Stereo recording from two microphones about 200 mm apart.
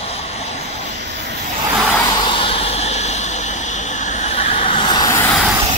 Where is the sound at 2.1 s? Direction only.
25° left (ahead or behind); by 5.5 s 5° left (ahead or behind).